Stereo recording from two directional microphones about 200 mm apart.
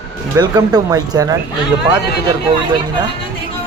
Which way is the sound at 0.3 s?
20° right (ahead or behind).